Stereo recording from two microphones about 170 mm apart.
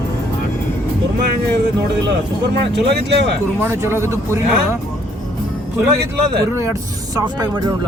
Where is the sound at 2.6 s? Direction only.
80° right.